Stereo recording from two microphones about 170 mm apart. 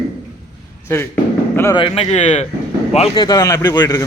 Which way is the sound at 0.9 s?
15° left (ahead or behind).